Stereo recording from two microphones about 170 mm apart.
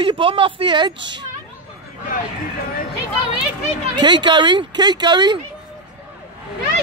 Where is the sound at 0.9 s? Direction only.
90° right.